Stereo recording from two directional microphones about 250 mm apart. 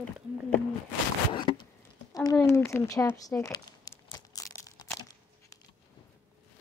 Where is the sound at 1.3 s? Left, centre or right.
Centre.